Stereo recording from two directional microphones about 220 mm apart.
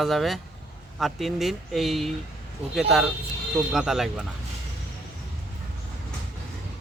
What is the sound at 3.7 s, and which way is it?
Speech, centre (ahead or behind).